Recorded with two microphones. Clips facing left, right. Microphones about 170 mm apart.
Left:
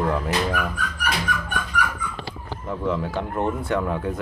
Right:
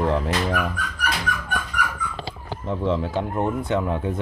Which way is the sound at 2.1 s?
25° right (ahead or behind).